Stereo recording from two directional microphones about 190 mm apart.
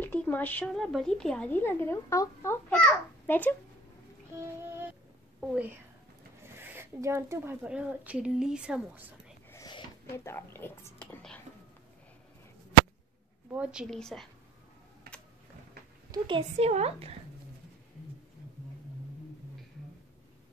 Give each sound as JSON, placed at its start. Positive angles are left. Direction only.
{"t": 0.0, "sound": "speech", "side_deg": 10}
{"t": 5.4, "sound": "speech", "side_deg": -5}
{"t": 9.5, "sound": "a sound", "side_deg": 20}
{"t": 13.5, "sound": "a woman's voice", "side_deg": -5}
{"t": 16.1, "sound": "a woman's voice", "side_deg": -25}